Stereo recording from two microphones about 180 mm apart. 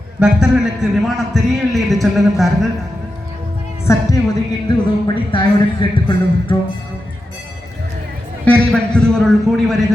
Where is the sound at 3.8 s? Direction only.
15° left (ahead or behind).